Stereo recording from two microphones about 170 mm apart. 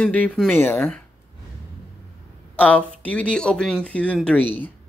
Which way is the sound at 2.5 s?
10° left (ahead or behind).